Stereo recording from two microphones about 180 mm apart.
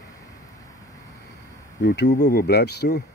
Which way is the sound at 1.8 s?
65° left (ahead or behind).